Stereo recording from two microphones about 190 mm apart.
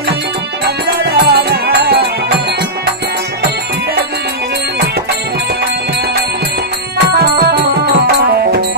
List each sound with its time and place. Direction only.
1.1 s music: 55° right (ahead or behind)
7.0 s music: 60° right (ahead or behind)